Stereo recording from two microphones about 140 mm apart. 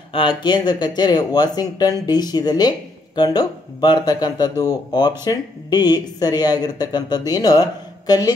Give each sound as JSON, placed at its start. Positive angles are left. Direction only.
{"t": 0.4, "sound": "speech", "side_deg": 30}